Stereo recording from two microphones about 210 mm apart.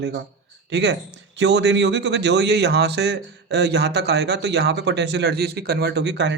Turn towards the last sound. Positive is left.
turn(degrees=-55)  # may be behind; listen again after turning